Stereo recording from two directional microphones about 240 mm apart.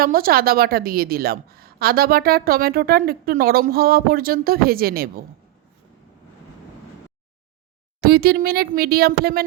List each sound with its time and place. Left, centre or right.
0.0 s a woman's voice: right
8.0 s a woman's voice: right